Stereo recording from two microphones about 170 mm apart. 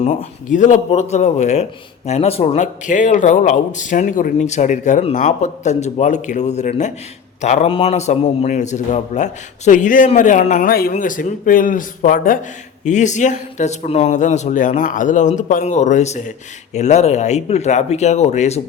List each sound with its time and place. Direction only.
0.0 s a man's voice: 40° left (ahead or behind)